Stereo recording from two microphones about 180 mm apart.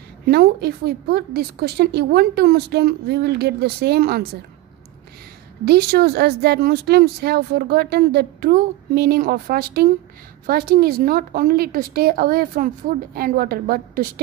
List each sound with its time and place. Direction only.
0.3 s speech: 65° right (ahead or behind)
5.7 s speech: 60° right (ahead or behind)